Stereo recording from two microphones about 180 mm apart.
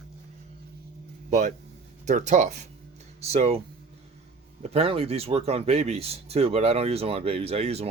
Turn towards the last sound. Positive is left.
turn(degrees=-35)  # may be behind; listen again after turning